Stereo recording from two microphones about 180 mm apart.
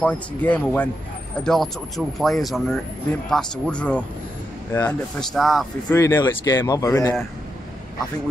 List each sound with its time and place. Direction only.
0.0 s speech: 10° left (ahead or behind)
5.9 s speech: 15° left (ahead or behind)